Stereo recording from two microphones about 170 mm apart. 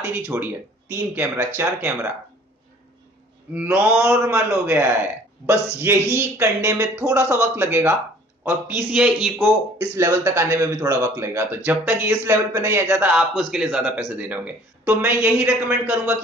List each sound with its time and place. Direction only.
0.0 s speech: 15° right (ahead or behind)
3.5 s speech: 10° right (ahead or behind)
9.9 s speech: 15° right (ahead or behind)